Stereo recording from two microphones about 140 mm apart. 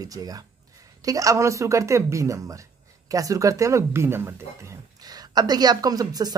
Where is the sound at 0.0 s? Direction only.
25° right (ahead or behind).